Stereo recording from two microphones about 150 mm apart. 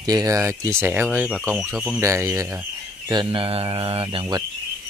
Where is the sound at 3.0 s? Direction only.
35° right (ahead or behind).